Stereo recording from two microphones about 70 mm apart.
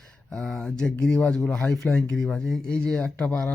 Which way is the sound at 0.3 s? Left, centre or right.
Centre.